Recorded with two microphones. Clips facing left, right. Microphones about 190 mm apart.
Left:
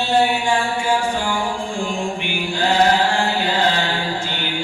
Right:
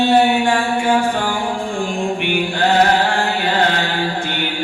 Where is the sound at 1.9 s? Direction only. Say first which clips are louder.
Right 4 dB; 60° right (ahead or behind).